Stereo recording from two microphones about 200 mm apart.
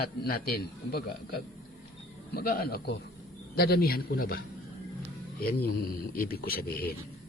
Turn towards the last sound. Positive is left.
turn(degrees=50)  # may be behind; listen again after turning